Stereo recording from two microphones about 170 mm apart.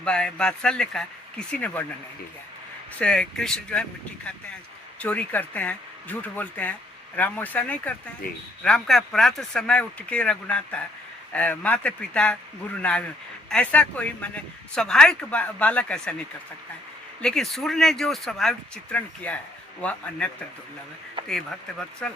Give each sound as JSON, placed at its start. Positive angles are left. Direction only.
{"t": 0.0, "sound": "speech", "side_deg": 5}
{"t": 3.0, "sound": "speech", "side_deg": 5}
{"t": 4.9, "sound": "speech", "side_deg": 10}
{"t": 8.2, "sound": "speech", "side_deg": 60}
{"t": 8.6, "sound": "speech", "side_deg": 5}